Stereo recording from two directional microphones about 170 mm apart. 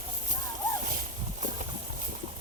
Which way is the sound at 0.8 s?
55° right (ahead or behind).